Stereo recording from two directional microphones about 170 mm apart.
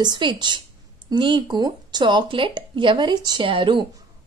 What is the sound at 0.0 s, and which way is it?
A woman's voice, 25° right (ahead or behind).